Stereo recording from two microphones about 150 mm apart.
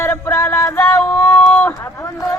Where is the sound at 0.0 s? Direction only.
15° left (ahead or behind).